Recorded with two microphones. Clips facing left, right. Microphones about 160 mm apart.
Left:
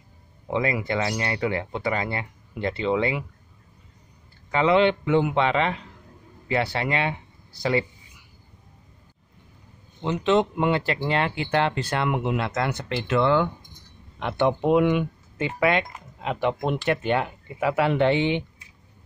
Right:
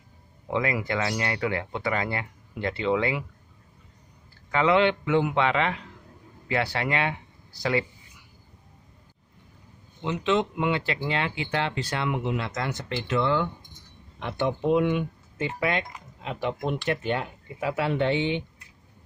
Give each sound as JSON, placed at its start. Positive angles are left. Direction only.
{"t": 0.5, "sound": "speech", "side_deg": 25}
{"t": 4.5, "sound": "speech", "side_deg": 25}
{"t": 10.0, "sound": "speech", "side_deg": 40}